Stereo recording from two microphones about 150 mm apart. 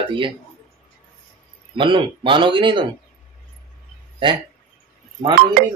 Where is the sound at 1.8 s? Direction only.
35° right (ahead or behind).